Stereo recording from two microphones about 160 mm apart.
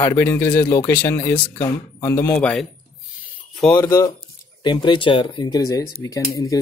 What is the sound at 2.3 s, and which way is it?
Speech, 5° left (ahead or behind).